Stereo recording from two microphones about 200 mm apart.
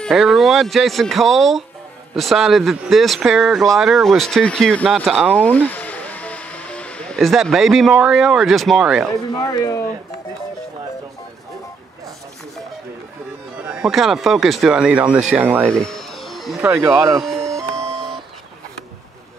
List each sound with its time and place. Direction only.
0.0 s speech: centre (ahead or behind)
5.4 s speech: 5° left (ahead or behind)
9.4 s speech: 15° left (ahead or behind)
13.7 s speech: 5° right (ahead or behind)
15.7 s music: 5° left (ahead or behind)
16.6 s speech: 10° right (ahead or behind)
17.9 s a sound: centre (ahead or behind)